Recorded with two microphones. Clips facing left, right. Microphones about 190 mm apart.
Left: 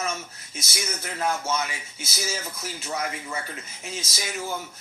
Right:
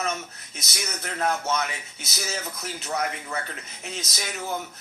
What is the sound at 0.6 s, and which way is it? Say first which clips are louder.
Speech: left 1 dB; 5° left (ahead or behind).